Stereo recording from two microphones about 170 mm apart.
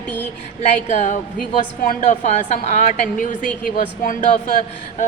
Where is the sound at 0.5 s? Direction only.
45° left (ahead or behind).